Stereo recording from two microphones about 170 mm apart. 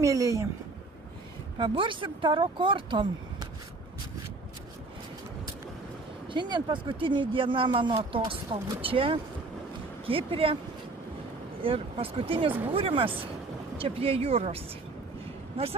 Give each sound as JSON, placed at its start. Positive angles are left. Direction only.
{"t": 0.0, "sound": "speech", "side_deg": -20}
{"t": 1.5, "sound": "speech", "side_deg": -30}
{"t": 6.2, "sound": "speech", "side_deg": -25}
{"t": 11.6, "sound": "speech", "side_deg": -35}